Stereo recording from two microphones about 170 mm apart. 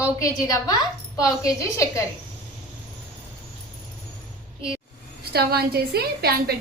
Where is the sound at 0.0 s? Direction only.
20° left (ahead or behind).